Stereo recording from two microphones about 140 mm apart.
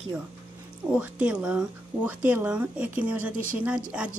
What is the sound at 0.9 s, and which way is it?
A woman's voice, 10° right (ahead or behind).